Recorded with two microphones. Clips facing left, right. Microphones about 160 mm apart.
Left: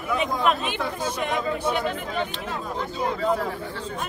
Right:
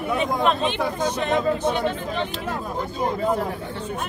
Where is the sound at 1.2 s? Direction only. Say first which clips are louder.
Right 4 dB; 15° left (ahead or behind).